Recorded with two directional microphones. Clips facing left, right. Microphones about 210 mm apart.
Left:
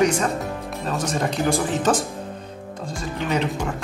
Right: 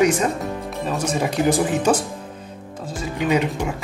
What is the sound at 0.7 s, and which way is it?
Speech, 5° right (ahead or behind).